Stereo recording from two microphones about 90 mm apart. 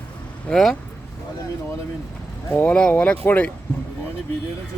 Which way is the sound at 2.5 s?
15° left (ahead or behind).